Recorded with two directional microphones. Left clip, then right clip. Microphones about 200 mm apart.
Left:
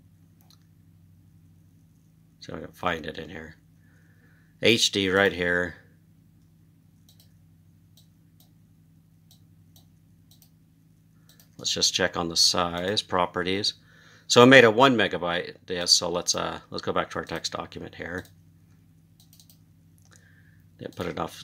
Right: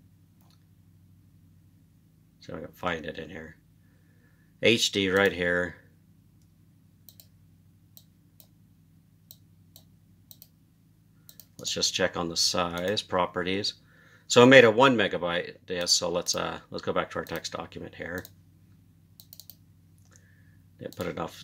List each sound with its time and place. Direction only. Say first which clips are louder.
2.4 s speech: left 3 dB; 15° left (ahead or behind)
4.6 s speech: left 2 dB; 15° left (ahead or behind)
11.5 s speech: left 4 dB; 15° left (ahead or behind)
20.7 s speech: left 2 dB; 20° left (ahead or behind)